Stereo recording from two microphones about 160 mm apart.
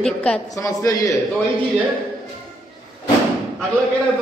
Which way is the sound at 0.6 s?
20° left (ahead or behind).